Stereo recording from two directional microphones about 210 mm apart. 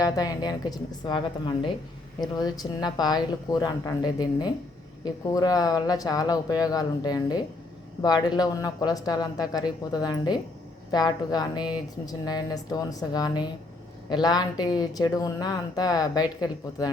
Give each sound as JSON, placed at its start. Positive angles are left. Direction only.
{"t": 0.0, "sound": "speech", "side_deg": 15}